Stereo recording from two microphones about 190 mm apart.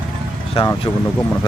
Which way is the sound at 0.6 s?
30° left (ahead or behind).